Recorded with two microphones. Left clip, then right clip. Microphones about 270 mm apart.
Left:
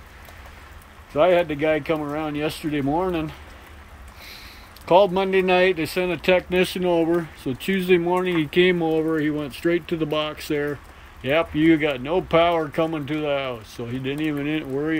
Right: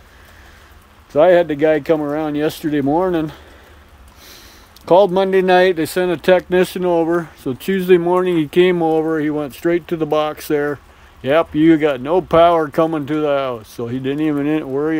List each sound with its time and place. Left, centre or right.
1.1 s speech: right
4.8 s speech: right